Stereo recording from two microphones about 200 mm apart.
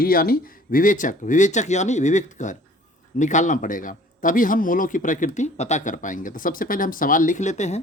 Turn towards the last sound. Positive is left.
turn(degrees=35)  # may be behind; listen again after turning